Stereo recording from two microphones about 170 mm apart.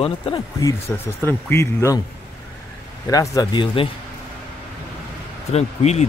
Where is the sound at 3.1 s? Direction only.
20° left (ahead or behind).